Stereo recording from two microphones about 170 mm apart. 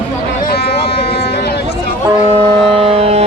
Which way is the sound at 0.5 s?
70° left (ahead or behind).